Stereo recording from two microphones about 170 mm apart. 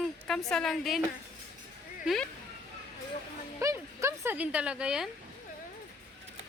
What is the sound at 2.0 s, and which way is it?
Speech, centre (ahead or behind).